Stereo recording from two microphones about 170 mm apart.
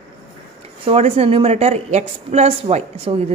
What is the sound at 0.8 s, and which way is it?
A woman's voice, 35° right (ahead or behind).